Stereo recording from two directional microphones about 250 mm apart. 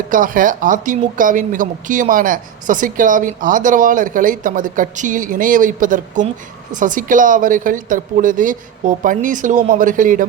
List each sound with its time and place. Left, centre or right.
0.1 s speech: right